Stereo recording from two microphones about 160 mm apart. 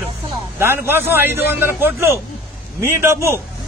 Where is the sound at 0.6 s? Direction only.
15° right (ahead or behind).